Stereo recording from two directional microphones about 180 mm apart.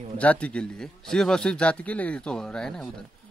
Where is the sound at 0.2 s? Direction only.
5° left (ahead or behind).